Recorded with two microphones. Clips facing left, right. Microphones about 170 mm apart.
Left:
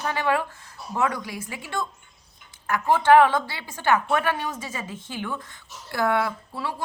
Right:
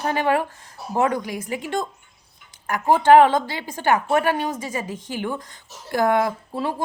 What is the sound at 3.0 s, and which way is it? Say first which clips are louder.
A woman's voice: right 3 dB; 40° right (ahead or behind).